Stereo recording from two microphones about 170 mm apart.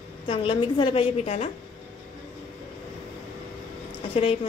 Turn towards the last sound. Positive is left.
turn(degrees=35)  # may be behind; listen again after turning